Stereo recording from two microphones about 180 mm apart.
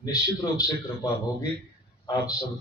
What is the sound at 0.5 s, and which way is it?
A man's voice, 20° left (ahead or behind).